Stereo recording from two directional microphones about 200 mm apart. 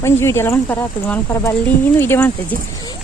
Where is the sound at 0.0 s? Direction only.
15° left (ahead or behind).